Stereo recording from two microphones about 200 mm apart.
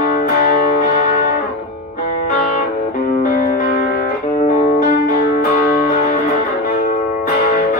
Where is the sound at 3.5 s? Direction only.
40° left (ahead or behind).